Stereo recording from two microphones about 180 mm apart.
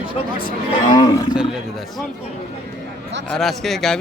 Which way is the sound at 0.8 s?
25° left (ahead or behind).